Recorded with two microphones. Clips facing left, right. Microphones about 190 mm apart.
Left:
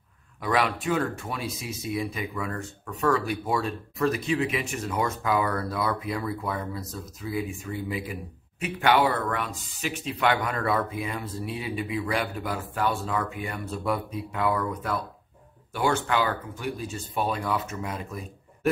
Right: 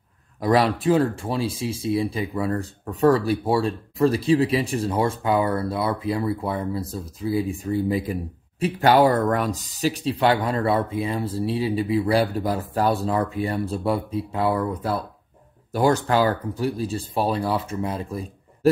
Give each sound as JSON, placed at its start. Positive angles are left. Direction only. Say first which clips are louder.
{"t": 0.4, "sound": "speech", "louder": "right 6 dB", "side_deg": -35}